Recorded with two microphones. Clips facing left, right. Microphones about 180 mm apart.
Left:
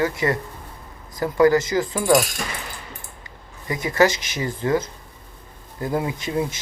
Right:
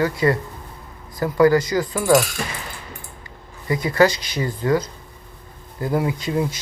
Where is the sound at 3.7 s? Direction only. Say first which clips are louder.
Right 2 dB; 20° left (ahead or behind).